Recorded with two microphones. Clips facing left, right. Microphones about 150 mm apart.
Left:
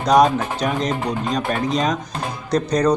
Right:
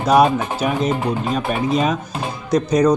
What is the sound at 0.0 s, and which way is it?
A man's voice, 5° right (ahead or behind).